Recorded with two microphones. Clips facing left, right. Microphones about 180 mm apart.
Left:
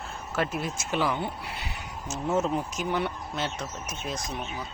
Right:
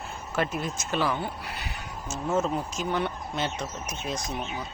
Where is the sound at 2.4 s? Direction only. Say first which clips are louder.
Even; 15° left (ahead or behind).